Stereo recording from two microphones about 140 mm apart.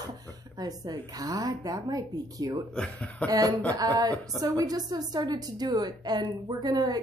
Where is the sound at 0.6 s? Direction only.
30° right (ahead or behind).